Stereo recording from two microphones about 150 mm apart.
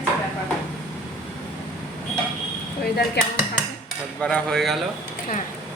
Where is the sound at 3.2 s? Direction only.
90° left.